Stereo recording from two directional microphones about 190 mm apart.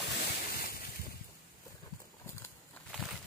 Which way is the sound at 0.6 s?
50° left (ahead or behind).